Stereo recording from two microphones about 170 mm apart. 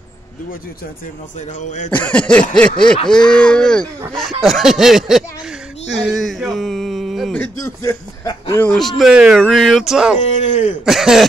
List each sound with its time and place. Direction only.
1.6 s speech: 45° left (ahead or behind)
1.9 s cough: 10° left (ahead or behind)
3.1 s speech: 5° left (ahead or behind)
8.6 s speech: centre (ahead or behind)
10.2 s speech: 40° left (ahead or behind)
10.9 s speech: centre (ahead or behind)